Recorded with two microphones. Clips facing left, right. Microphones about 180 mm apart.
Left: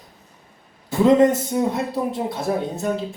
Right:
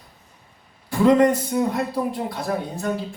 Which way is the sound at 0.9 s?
20° left (ahead or behind).